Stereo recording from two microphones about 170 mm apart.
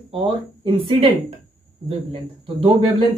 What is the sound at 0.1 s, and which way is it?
Speech, 30° right (ahead or behind).